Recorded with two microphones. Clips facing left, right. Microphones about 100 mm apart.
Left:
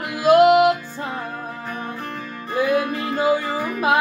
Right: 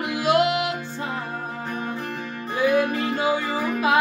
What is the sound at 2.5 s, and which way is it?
Music, 45° left (ahead or behind).